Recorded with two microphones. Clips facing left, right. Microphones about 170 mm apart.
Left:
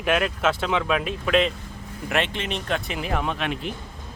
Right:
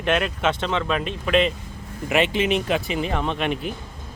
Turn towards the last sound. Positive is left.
turn(degrees=0)  # may be behind; listen again after turning